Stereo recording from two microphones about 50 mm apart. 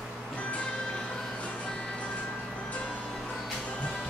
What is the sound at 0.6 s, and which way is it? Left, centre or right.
Music, centre.